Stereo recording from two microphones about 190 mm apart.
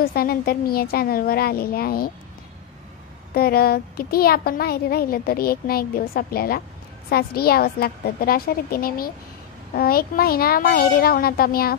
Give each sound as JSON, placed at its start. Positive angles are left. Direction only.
{"t": 0.0, "sound": "a child's voice", "side_deg": 50}
{"t": 3.3, "sound": "a child's voice", "side_deg": 55}